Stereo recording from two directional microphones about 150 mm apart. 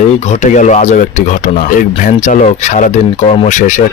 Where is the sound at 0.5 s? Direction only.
50° left (ahead or behind).